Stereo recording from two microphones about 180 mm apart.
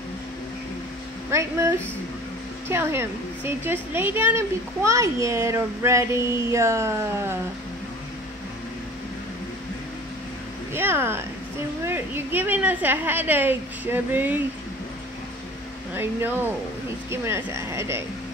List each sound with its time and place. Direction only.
2.7 s a woman's voice: 15° right (ahead or behind)
10.7 s a woman's voice: 10° right (ahead or behind)
15.9 s a woman's voice: 10° right (ahead or behind)